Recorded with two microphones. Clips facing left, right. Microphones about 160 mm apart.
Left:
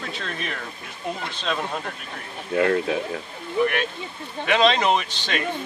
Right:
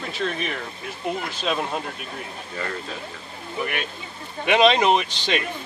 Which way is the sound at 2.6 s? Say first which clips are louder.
Left 11 dB; 65° left (ahead or behind).